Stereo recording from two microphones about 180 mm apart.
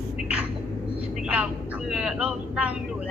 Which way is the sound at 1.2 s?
5° right (ahead or behind).